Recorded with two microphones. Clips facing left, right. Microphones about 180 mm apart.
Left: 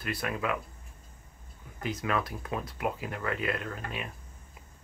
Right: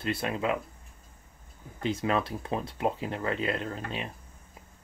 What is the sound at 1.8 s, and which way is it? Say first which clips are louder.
Speech: right 3 dB; 25° right (ahead or behind).